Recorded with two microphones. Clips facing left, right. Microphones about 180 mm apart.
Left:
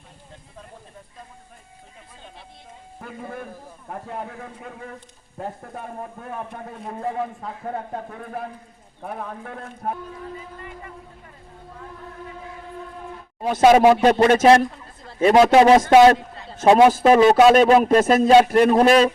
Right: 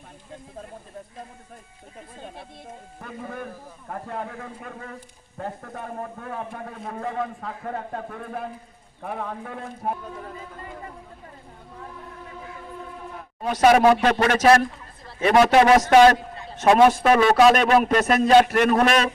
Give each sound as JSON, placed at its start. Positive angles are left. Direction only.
{"t": 3.0, "sound": "speech", "side_deg": 5}
{"t": 6.8, "sound": "a man's voice", "side_deg": 10}
{"t": 9.0, "sound": "speech", "side_deg": 0}
{"t": 13.5, "sound": "speech", "side_deg": 25}